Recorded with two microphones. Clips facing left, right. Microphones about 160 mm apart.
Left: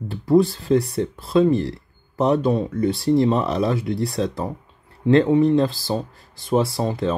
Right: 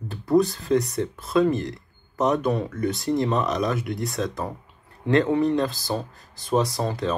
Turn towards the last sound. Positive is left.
turn(degrees=25)  # may be behind; listen again after turning